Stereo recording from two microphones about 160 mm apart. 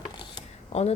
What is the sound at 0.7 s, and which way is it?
Speech, 40° left (ahead or behind).